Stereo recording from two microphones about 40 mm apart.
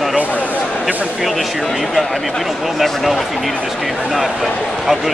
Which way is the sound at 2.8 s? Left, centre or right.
Centre.